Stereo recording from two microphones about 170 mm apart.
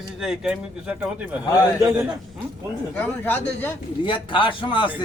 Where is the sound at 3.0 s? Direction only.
10° left (ahead or behind).